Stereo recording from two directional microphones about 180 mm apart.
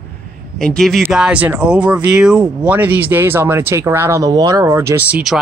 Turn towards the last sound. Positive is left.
turn(degrees=-5)  # may be behind; listen again after turning